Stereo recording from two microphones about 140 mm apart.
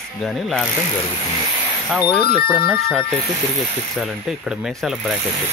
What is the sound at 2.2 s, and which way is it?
Speech, 90° left.